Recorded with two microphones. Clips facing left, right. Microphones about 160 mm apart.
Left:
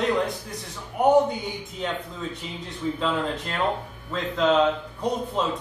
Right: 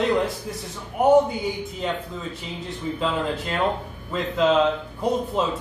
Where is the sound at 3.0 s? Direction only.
5° right (ahead or behind).